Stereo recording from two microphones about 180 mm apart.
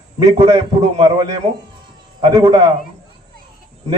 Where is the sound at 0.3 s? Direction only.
35° right (ahead or behind).